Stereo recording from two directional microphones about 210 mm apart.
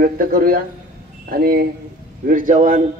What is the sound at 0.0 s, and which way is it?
A man's voice, 45° right (ahead or behind).